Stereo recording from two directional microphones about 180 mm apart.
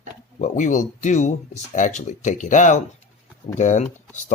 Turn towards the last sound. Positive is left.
turn(degrees=40)  # may be behind; listen again after turning